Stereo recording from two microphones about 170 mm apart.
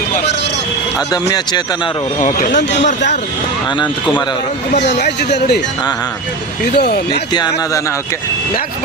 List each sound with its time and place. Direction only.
0.9 s speech: 20° left (ahead or behind)
2.2 s speech: 50° left (ahead or behind)
4.8 s speech: 80° left
6.7 s speech: 75° left (ahead or behind)
7.3 s speech: 25° left (ahead or behind)